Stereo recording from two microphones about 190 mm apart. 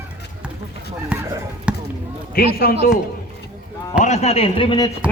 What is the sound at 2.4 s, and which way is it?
Speech, 55° left (ahead or behind).